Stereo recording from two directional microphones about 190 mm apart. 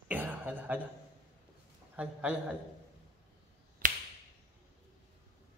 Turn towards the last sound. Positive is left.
turn(degrees=-45)  # may be behind; listen again after turning